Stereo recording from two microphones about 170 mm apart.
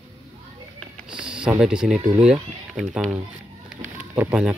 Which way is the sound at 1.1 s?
5° right (ahead or behind).